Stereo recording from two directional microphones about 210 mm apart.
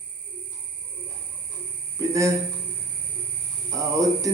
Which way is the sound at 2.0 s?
15° right (ahead or behind).